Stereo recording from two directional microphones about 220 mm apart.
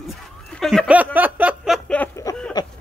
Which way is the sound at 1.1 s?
10° right (ahead or behind).